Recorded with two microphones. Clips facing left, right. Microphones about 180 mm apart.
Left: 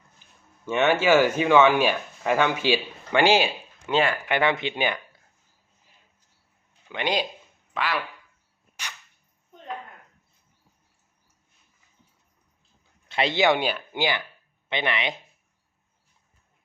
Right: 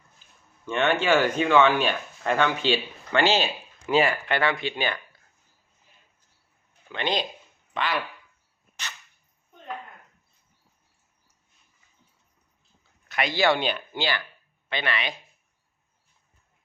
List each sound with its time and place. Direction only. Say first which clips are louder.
0.6 s speech: left 3 dB; 10° left (ahead or behind)
3.8 s speech: right 1 dB; 5° right (ahead or behind)
4.3 s speech: left 2 dB; 20° left (ahead or behind)
6.9 s speech: left 1 dB; 10° left (ahead or behind)
13.1 s speech: left 2 dB; 25° left (ahead or behind)